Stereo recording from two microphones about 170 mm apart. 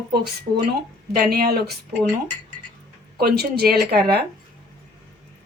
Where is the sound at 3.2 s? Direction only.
65° right (ahead or behind).